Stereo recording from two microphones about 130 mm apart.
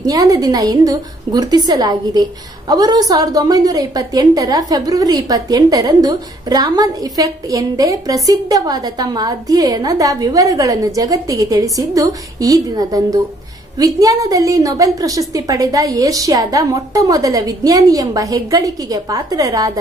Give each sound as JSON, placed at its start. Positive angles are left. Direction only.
{"t": 0.0, "sound": "a woman's voice", "side_deg": -30}